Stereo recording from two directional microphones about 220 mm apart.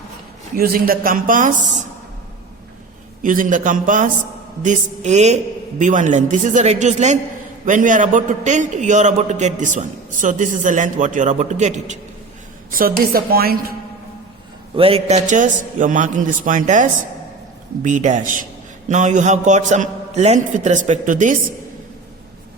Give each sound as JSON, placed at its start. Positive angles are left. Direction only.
{"t": 0.5, "sound": "a man's voice", "side_deg": -40}
{"t": 3.2, "sound": "a man's voice", "side_deg": -35}
{"t": 14.8, "sound": "a man's voice", "side_deg": -25}